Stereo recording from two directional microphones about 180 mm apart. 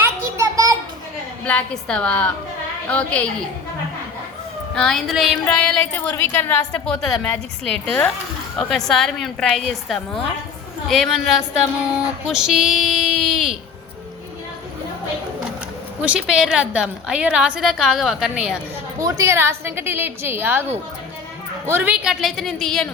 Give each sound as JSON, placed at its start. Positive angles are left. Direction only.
{"t": 0.0, "sound": "a sound", "side_deg": -15}
{"t": 1.5, "sound": "a woman's voice", "side_deg": 5}
{"t": 4.7, "sound": "a woman's voice", "side_deg": 5}
{"t": 8.5, "sound": "a woman's voice", "side_deg": 0}
{"t": 16.0, "sound": "a woman's voice", "side_deg": -5}
{"t": 18.9, "sound": "a woman's voice", "side_deg": -20}
{"t": 21.7, "sound": "a woman's voice", "side_deg": -10}